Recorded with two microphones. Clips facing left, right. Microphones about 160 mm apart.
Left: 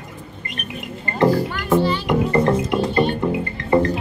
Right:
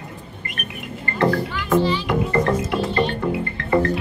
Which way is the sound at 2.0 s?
20° left (ahead or behind).